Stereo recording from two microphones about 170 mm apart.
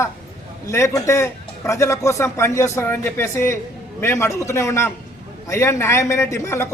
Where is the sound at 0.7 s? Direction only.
15° left (ahead or behind).